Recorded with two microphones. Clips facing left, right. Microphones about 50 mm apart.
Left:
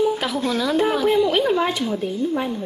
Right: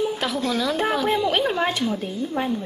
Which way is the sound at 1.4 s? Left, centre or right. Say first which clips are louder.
Left 3 dB; centre.